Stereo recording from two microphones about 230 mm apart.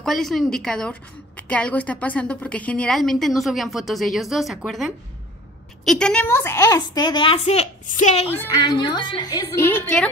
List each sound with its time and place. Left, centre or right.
0.0 s a woman's voice: centre; by 8.3 s left
8.3 s a woman's voice: centre